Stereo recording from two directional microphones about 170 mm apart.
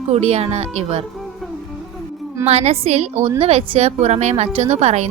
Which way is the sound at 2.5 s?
40° right (ahead or behind).